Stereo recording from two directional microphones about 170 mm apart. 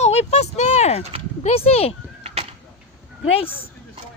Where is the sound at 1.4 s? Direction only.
35° left (ahead or behind).